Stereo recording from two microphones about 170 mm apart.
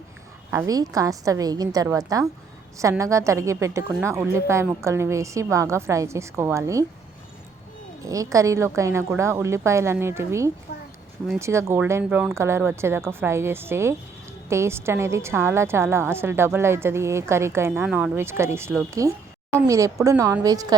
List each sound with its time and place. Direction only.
0.5 s a woman's voice: 20° right (ahead or behind)
8.0 s a woman's voice: 20° right (ahead or behind)